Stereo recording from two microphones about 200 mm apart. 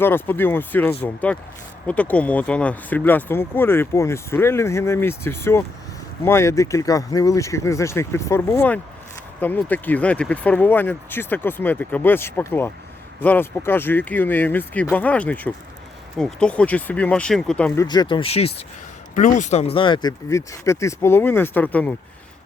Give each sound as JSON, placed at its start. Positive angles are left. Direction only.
{"t": 0.0, "sound": "speech", "side_deg": 10}
{"t": 17.8, "sound": "speech", "side_deg": 20}
{"t": 19.1, "sound": "speech", "side_deg": 40}